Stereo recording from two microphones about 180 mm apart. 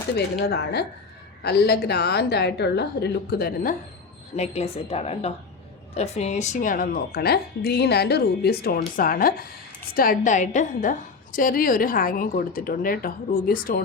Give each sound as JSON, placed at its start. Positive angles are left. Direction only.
{"t": 0.2, "sound": "speech", "side_deg": 65}
{"t": 4.4, "sound": "a woman's voice", "side_deg": 35}